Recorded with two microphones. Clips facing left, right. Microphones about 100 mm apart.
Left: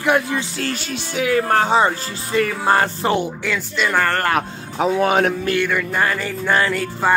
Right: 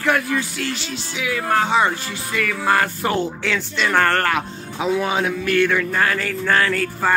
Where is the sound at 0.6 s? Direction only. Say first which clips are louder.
Left 2 dB; 45° left (ahead or behind); by 3.3 s 25° left (ahead or behind).